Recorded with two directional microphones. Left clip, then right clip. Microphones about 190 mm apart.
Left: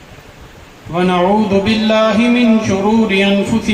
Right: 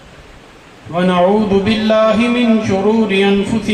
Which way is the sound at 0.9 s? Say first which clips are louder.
Right 1 dB; 40° left (ahead or behind).